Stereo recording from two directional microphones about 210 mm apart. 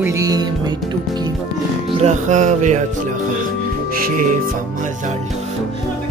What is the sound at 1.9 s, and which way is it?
Music, 30° right (ahead or behind).